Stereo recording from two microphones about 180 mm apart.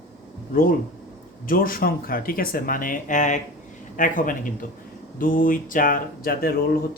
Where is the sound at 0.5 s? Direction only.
50° left (ahead or behind).